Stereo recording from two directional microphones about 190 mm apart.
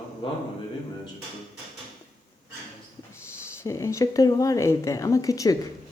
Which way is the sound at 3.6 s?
15° left (ahead or behind).